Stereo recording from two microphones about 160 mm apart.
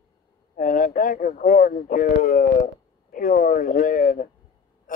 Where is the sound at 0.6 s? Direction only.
55° left (ahead or behind).